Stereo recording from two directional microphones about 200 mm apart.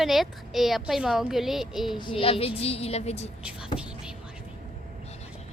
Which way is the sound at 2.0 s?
25° left (ahead or behind).